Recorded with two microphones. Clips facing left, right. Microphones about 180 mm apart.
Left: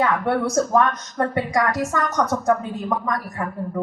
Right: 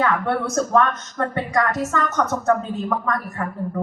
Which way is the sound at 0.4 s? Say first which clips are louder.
Even; 15° left (ahead or behind).